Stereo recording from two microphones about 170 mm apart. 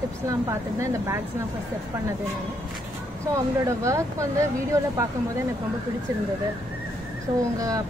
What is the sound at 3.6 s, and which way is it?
Speech, 20° right (ahead or behind).